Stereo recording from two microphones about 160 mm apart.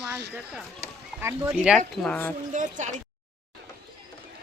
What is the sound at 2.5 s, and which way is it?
Speech, 50° right (ahead or behind).